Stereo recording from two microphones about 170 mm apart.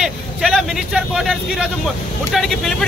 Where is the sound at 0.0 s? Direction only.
Centre (ahead or behind).